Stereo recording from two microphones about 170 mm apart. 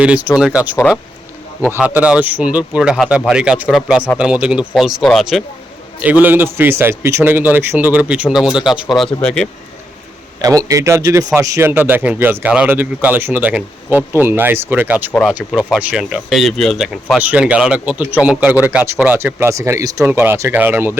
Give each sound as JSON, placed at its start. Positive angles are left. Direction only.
{"t": 0.0, "sound": "speech", "side_deg": -5}
{"t": 10.4, "sound": "speech", "side_deg": -20}